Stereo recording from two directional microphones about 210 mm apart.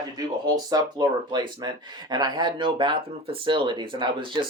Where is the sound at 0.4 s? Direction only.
20° right (ahead or behind).